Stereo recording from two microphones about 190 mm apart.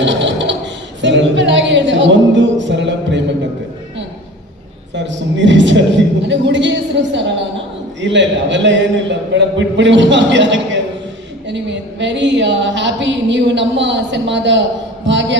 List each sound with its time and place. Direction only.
0.0 s a sound: 70° right (ahead or behind)
1.0 s a woman's voice: 70° right (ahead or behind)
4.9 s a woman's voice: 70° right (ahead or behind)